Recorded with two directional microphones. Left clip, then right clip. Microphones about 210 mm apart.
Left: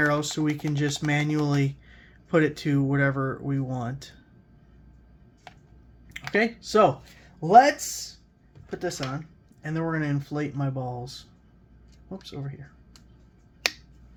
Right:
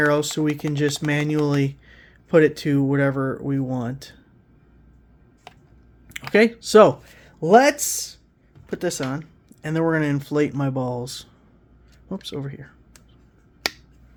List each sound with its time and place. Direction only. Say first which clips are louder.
0.0 s speech: right 5 dB; 25° right (ahead or behind)
6.3 s speech: right 8 dB; 45° right (ahead or behind)